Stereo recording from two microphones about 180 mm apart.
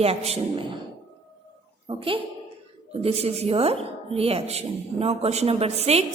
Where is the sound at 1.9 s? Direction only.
30° right (ahead or behind).